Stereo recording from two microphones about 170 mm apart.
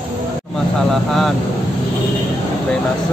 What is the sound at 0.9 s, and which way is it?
Vehicle, centre (ahead or behind).